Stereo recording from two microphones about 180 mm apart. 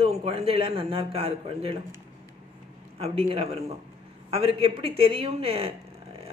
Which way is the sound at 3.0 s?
35° right (ahead or behind).